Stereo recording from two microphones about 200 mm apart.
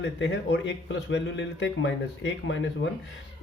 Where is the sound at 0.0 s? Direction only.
65° left (ahead or behind).